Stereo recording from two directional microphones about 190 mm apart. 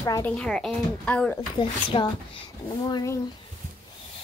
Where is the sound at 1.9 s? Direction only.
30° left (ahead or behind).